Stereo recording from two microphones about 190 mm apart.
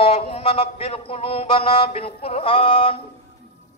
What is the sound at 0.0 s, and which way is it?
A man's voice, 30° left (ahead or behind).